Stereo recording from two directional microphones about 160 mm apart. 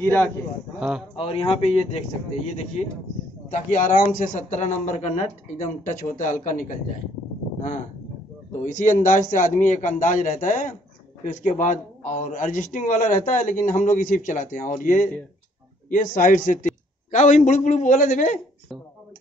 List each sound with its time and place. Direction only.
0.0 s a man's voice: 10° left (ahead or behind)
0.7 s speech: 5° right (ahead or behind)
1.1 s a man's voice: 35° left (ahead or behind)
3.4 s a man's voice: 50° left (ahead or behind)
8.6 s a man's voice: 55° left (ahead or behind)